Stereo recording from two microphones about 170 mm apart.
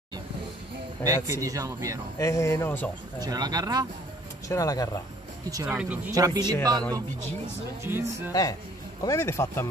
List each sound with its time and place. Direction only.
1.4 s speech: 20° right (ahead or behind)
2.1 s speech: 20° left (ahead or behind)
3.2 s speech: 25° right (ahead or behind)
4.5 s speech: 20° left (ahead or behind)
5.7 s speech: 10° right (ahead or behind)
6.1 s speech: 20° right (ahead or behind)
6.8 s speech: 10° left (ahead or behind)
7.8 s speech: 15° right (ahead or behind)
8.3 s speech: 20° left (ahead or behind)